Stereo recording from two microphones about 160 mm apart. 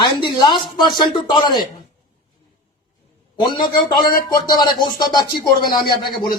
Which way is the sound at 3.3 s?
25° left (ahead or behind).